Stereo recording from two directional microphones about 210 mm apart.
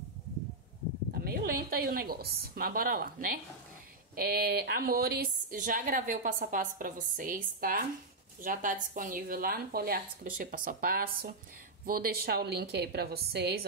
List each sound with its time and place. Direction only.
1.1 s a woman's voice: 45° right (ahead or behind)